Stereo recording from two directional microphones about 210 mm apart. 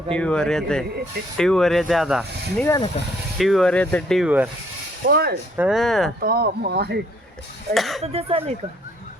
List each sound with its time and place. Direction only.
0.1 s speech: 5° left (ahead or behind)
2.6 s speech: 20° left (ahead or behind)
3.3 s speech: centre (ahead or behind)
5.0 s speech: 50° right (ahead or behind)
5.5 s speech: centre (ahead or behind)
6.2 s speech: 45° right (ahead or behind)
7.7 s speech: centre (ahead or behind)
8.0 s speech: 30° right (ahead or behind)